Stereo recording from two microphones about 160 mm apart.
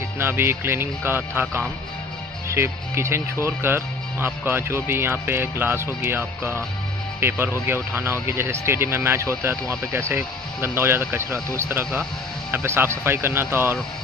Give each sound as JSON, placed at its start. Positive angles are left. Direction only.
{"t": 0.2, "sound": "speech", "side_deg": -15}